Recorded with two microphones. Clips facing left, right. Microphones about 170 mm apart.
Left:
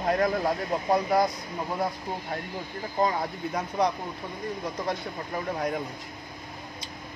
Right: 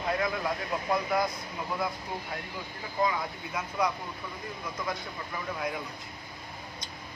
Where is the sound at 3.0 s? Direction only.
40° left (ahead or behind).